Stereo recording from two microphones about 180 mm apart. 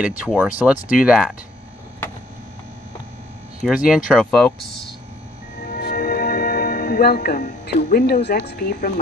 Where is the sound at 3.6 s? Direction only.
5° right (ahead or behind).